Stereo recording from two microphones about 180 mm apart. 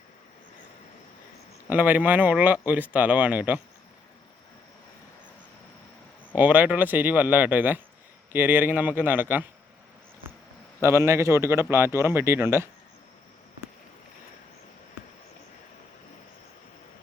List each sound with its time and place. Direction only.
1.7 s speech: 10° right (ahead or behind)
6.3 s speech: 10° right (ahead or behind)
10.8 s speech: 15° right (ahead or behind)